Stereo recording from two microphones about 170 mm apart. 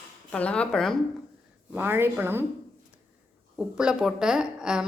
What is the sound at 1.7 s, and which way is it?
Speech, 10° right (ahead or behind).